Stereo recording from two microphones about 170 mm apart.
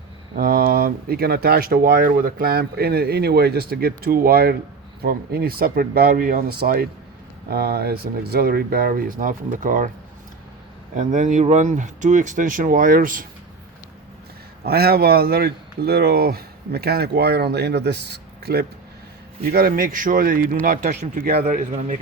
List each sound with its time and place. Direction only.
0.3 s speech: 60° right (ahead or behind)
10.9 s speech: 50° right (ahead or behind)
14.6 s speech: 65° right (ahead or behind)
19.4 s speech: 60° right (ahead or behind)